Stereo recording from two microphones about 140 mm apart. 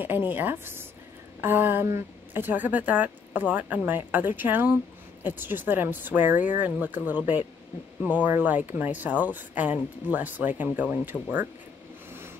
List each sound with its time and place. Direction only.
0.0 s a woman's voice: 15° right (ahead or behind)